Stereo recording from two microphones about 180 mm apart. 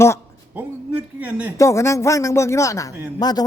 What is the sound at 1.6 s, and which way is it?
A man's voice, 15° left (ahead or behind).